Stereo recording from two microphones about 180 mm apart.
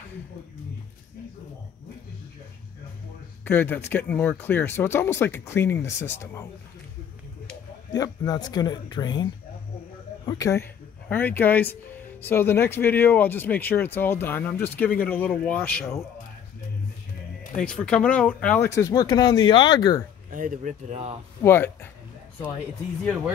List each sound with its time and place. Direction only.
3.4 s speech: 10° left (ahead or behind)
7.9 s speech: 20° left (ahead or behind)
17.6 s speech: 5° left (ahead or behind); by 20.0 s 20° left (ahead or behind)
20.2 s speech: 50° right (ahead or behind)
21.4 s speech: 15° left (ahead or behind)